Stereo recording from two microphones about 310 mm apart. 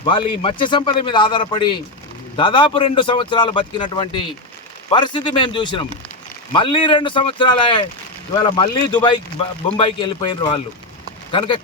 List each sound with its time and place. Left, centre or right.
0.0 s speech: centre